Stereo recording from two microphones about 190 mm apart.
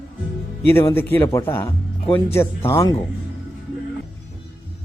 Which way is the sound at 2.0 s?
30° left (ahead or behind).